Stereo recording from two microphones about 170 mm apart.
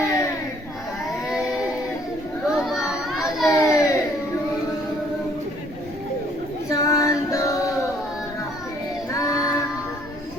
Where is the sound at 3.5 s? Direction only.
20° left (ahead or behind).